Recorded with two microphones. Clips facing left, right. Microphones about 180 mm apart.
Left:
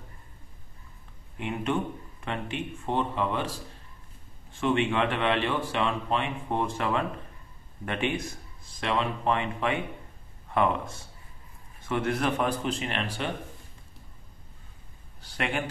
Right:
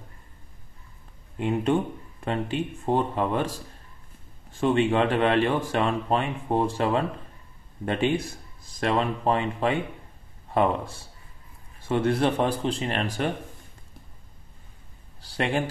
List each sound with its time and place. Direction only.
1.4 s speech: 35° right (ahead or behind)
15.1 s speech: 35° right (ahead or behind)